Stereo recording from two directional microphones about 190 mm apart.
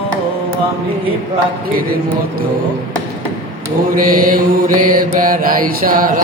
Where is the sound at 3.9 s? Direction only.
45° right (ahead or behind).